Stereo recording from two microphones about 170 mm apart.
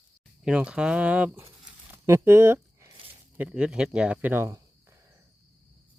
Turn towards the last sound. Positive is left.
turn(degrees=-15)  # may be behind; listen again after turning